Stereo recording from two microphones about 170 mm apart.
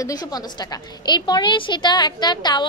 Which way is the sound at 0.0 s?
20° left (ahead or behind).